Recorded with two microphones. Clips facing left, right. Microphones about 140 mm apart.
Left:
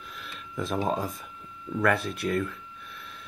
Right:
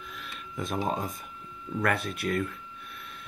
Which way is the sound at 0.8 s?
Centre (ahead or behind).